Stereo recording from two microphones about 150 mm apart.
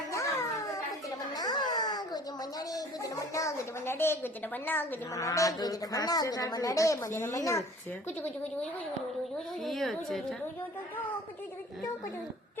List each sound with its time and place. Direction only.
0.1 s cat: 20° left (ahead or behind)
1.3 s a sound: 25° left (ahead or behind)
9.6 s a woman's voice: centre (ahead or behind)